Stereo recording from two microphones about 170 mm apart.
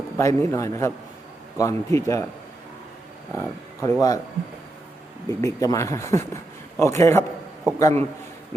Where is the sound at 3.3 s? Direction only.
15° left (ahead or behind).